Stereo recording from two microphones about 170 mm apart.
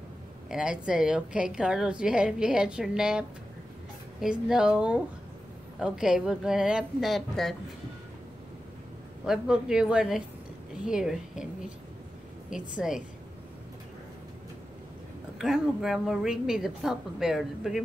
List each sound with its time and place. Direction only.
0.5 s a woman's voice: 5° right (ahead or behind)
9.2 s a woman's voice: 5° right (ahead or behind)
12.4 s a woman's voice: 5° right (ahead or behind)
15.3 s a woman's voice: 5° right (ahead or behind)